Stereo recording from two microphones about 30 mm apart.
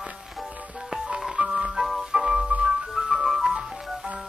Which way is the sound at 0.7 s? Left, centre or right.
Centre.